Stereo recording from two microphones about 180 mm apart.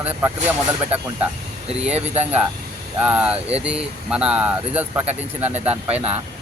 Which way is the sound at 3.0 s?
10° right (ahead or behind).